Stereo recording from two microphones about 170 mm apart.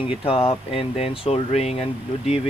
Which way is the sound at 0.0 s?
35° left (ahead or behind).